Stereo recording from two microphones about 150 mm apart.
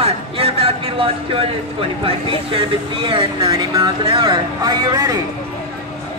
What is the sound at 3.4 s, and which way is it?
Speech, 25° right (ahead or behind).